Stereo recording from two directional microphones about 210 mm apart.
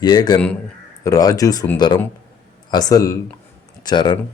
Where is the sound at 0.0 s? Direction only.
20° left (ahead or behind).